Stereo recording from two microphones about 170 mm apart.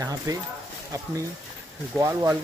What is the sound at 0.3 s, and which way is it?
Speech, 20° right (ahead or behind).